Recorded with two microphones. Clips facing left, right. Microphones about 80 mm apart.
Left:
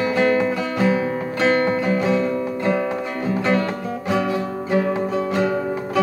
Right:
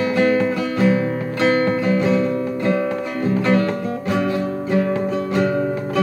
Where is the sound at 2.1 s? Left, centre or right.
Centre.